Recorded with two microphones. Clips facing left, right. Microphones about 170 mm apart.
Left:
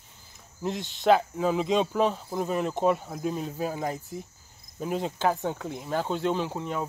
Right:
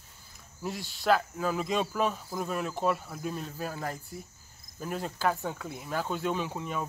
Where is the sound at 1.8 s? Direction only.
20° left (ahead or behind).